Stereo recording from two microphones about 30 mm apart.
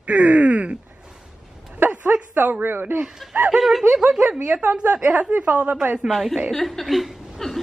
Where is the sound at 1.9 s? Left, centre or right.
Right.